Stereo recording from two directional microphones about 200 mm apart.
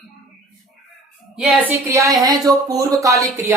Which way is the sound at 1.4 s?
10° right (ahead or behind).